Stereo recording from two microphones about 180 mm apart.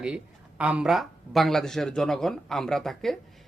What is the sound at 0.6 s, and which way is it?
Speech, 5° right (ahead or behind).